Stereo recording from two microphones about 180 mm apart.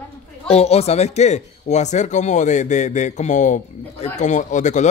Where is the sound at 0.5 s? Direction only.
35° left (ahead or behind).